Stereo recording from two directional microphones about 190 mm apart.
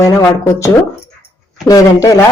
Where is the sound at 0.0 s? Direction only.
15° left (ahead or behind).